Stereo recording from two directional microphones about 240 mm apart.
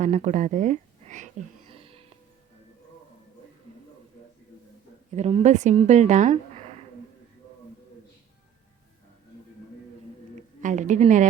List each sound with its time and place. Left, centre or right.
0.0 s speech: right
1.7 s music: right
5.1 s a woman's voice: right
10.6 s a woman's voice: right